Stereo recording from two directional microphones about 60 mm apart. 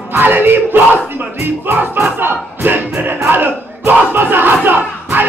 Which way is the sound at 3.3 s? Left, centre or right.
Right.